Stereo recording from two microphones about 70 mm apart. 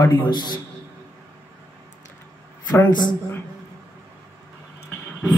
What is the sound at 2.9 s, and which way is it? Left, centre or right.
Speech, left.